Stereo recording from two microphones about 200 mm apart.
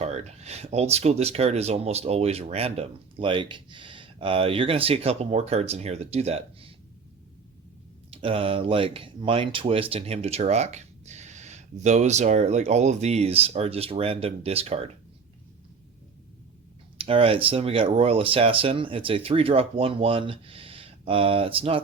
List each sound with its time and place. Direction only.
0.0 s speech: 35° right (ahead or behind)
8.1 s speech: 30° right (ahead or behind)
17.0 s speech: 30° right (ahead or behind)